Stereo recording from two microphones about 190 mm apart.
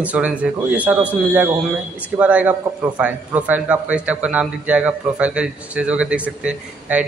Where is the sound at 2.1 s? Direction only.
10° right (ahead or behind).